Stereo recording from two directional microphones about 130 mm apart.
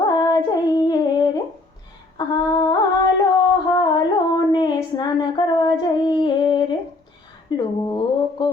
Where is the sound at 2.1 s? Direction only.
30° left (ahead or behind).